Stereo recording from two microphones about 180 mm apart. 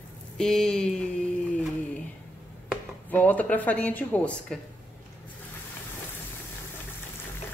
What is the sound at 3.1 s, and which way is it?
A woman's voice, 10° left (ahead or behind).